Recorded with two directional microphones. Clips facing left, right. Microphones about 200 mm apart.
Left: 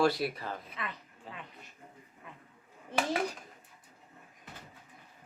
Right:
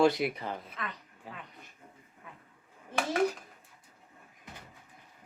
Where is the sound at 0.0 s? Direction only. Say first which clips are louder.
Right 3 dB; 20° right (ahead or behind).